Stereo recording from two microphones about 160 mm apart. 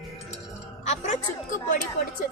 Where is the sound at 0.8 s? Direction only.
45° left (ahead or behind).